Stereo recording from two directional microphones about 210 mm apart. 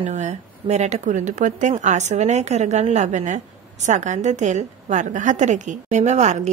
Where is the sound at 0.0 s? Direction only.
35° right (ahead or behind).